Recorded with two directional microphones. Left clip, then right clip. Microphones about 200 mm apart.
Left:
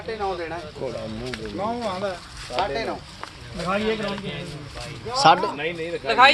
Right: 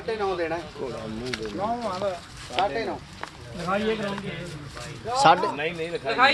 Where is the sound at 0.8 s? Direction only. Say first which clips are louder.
Left 3 dB; 35° left (ahead or behind).